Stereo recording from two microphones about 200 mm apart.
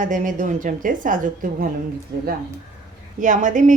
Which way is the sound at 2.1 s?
55° right (ahead or behind).